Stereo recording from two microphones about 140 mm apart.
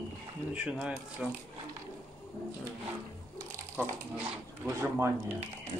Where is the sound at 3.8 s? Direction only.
10° right (ahead or behind).